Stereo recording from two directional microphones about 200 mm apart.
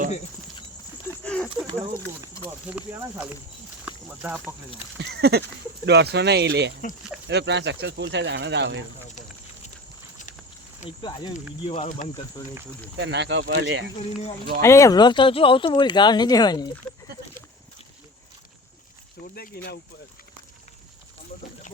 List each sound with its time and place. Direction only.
1.2 s a sound: 5° left (ahead or behind)
2.5 s speech: 5° right (ahead or behind)
5.0 s a sound: 55° right (ahead or behind)
5.8 s speech: 55° right (ahead or behind)
10.8 s speech: 25° left (ahead or behind)
11.9 s speech: 40° left (ahead or behind)
13.0 s speech: 60° right (ahead or behind)
14.0 s speech: 35° left (ahead or behind)
14.6 s speech: 15° left (ahead or behind)
19.2 s speech: 50° left (ahead or behind)